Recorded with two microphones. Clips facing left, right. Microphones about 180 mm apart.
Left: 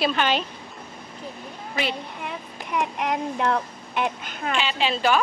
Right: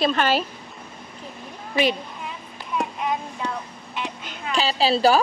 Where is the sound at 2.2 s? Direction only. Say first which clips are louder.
Left 2 dB; 70° left (ahead or behind); by 4.5 s 50° left (ahead or behind).